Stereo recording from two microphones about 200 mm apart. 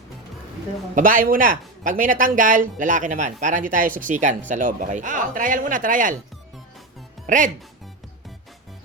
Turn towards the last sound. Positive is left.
turn(degrees=-40)  # may be behind; listen again after turning